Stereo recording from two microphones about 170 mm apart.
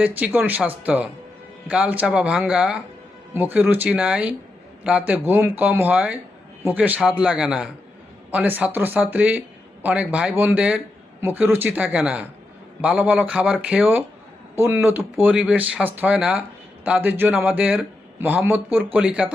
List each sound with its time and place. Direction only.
0.2 s speech: 10° right (ahead or behind)